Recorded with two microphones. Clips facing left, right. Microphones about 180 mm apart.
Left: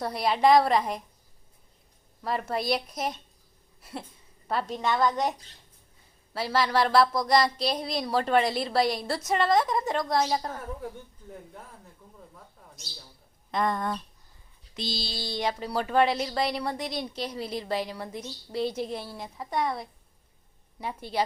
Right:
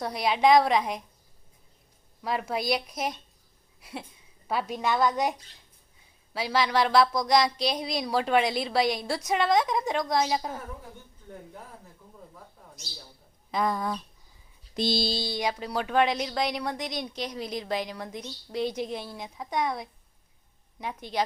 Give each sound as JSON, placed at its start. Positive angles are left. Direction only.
{"t": 0.0, "sound": "speech", "side_deg": 0}
{"t": 2.2, "sound": "speech", "side_deg": 0}
{"t": 4.4, "sound": "speech", "side_deg": -5}
{"t": 6.3, "sound": "speech", "side_deg": 0}
{"t": 13.5, "sound": "speech", "side_deg": 0}
{"t": 14.8, "sound": "a sound", "side_deg": -55}
{"t": 15.3, "sound": "a woman's voice", "side_deg": 0}